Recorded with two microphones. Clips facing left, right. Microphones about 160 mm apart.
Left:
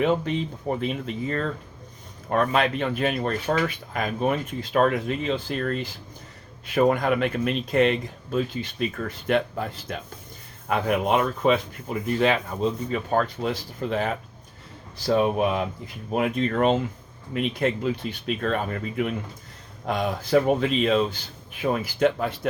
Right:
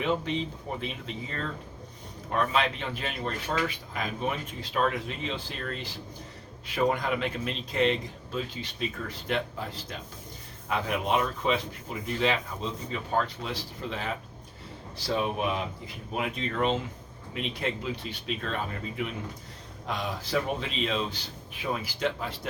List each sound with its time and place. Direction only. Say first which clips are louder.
0.0 s speech: left 5 dB; 50° left (ahead or behind)